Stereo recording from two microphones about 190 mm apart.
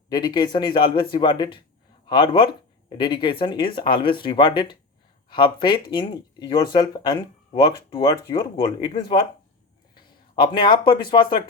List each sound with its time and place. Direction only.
0.1 s speech: 20° left (ahead or behind)